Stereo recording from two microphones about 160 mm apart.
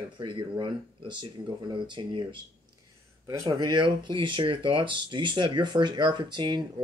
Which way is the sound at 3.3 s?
20° right (ahead or behind).